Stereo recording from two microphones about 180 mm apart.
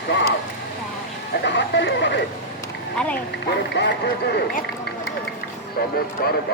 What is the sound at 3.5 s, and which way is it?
Speech, 70° left (ahead or behind).